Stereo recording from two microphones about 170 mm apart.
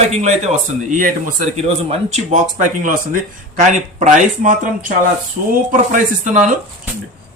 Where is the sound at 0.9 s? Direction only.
55° right (ahead or behind).